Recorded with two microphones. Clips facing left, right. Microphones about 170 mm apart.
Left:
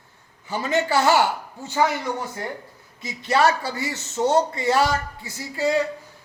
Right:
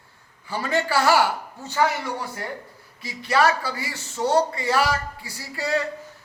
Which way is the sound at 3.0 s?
25° left (ahead or behind).